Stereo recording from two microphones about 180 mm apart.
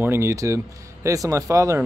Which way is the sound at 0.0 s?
15° right (ahead or behind).